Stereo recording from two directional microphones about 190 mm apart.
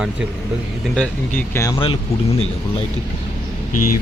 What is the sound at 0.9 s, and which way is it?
Speech, 5° left (ahead or behind).